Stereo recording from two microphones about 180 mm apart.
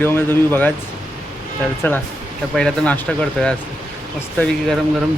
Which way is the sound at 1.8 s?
10° left (ahead or behind).